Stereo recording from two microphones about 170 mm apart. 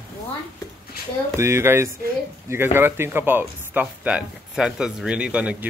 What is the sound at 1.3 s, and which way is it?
Speech, 15° right (ahead or behind).